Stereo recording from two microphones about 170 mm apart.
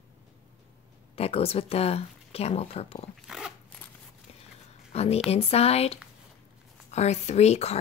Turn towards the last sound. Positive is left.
turn(degrees=40)  # may be behind; listen again after turning